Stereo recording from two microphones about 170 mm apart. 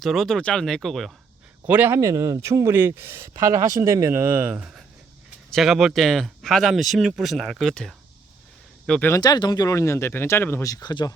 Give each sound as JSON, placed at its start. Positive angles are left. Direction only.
{"t": 0.0, "sound": "speech", "side_deg": 0}
{"t": 1.6, "sound": "speech", "side_deg": -10}
{"t": 9.2, "sound": "speech", "side_deg": 25}